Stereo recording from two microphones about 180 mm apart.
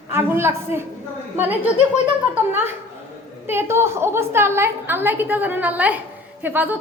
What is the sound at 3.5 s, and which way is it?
A woman's voice, 15° right (ahead or behind).